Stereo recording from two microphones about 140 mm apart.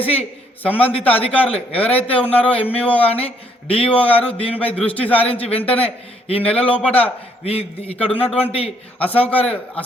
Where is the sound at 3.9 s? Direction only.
10° left (ahead or behind).